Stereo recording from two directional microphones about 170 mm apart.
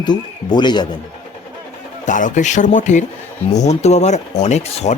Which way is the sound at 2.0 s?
50° left (ahead or behind).